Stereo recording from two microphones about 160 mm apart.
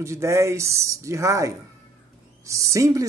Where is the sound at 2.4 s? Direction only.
20° right (ahead or behind).